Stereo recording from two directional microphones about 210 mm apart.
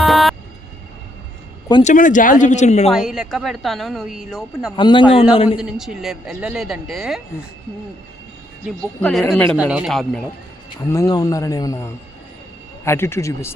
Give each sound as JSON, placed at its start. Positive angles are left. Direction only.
{"t": 0.0, "sound": "vehicle", "side_deg": 0}
{"t": 1.8, "sound": "speech", "side_deg": 35}
{"t": 2.9, "sound": "a woman's voice", "side_deg": 0}
{"t": 4.8, "sound": "a man's voice", "side_deg": 20}
{"t": 5.5, "sound": "a woman's voice", "side_deg": -5}
{"t": 8.6, "sound": "a woman's voice", "side_deg": 5}
{"t": 9.6, "sound": "a woman's voice", "side_deg": -5}
{"t": 10.8, "sound": "speech", "side_deg": 15}